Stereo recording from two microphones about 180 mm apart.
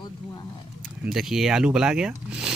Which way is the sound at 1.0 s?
Centre (ahead or behind).